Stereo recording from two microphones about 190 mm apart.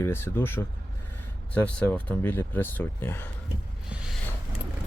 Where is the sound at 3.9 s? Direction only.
5° right (ahead or behind).